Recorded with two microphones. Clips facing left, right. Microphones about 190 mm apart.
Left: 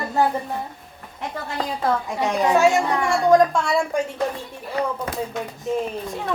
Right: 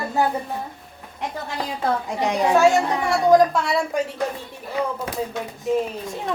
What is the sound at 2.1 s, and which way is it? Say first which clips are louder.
Speech: even; 15° right (ahead or behind).